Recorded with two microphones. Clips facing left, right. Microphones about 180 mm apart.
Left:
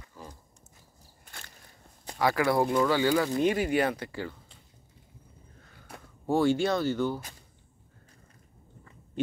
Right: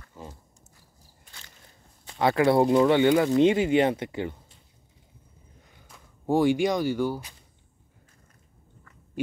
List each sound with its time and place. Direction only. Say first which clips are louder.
0.2 s biting: right 3 dB; 20° right (ahead or behind)
2.1 s speech: right 4 dB; 25° right (ahead or behind)
5.6 s a sound: right 1 dB; 15° right (ahead or behind)
6.2 s speech: right 3 dB; 15° right (ahead or behind)